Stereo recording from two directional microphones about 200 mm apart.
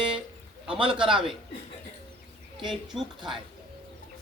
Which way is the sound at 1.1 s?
5° right (ahead or behind).